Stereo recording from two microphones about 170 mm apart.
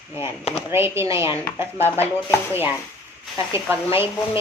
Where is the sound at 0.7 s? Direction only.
15° right (ahead or behind).